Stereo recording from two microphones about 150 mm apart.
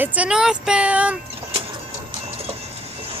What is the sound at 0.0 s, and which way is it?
Speech, 10° right (ahead or behind).